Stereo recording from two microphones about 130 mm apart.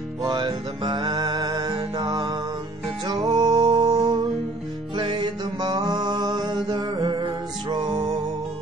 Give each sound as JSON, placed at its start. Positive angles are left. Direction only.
{"t": 0.2, "sound": "music", "side_deg": -35}